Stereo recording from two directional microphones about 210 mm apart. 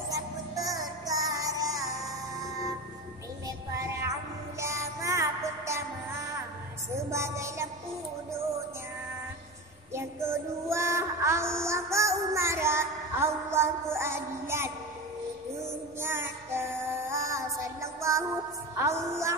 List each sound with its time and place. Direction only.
0.1 s music: 15° right (ahead or behind)
3.4 s music: 15° right (ahead or behind)
7.0 s music: 15° right (ahead or behind)
9.9 s a sound: 15° right (ahead or behind)
16.0 s music: 10° right (ahead or behind)